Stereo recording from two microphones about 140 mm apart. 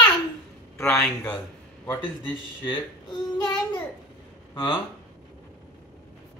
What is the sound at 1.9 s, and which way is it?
Speech, 35° left (ahead or behind).